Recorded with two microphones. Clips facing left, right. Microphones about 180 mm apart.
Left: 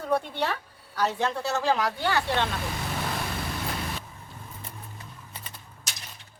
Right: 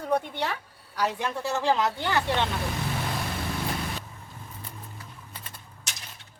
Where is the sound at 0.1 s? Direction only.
15° right (ahead or behind).